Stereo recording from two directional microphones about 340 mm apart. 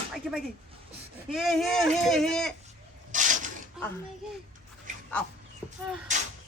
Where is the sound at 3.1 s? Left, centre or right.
Right.